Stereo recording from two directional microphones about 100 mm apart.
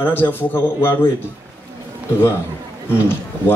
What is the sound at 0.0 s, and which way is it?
Speech, 20° left (ahead or behind).